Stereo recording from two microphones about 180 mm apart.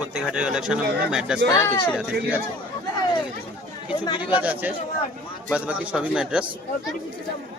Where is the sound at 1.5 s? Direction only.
20° left (ahead or behind).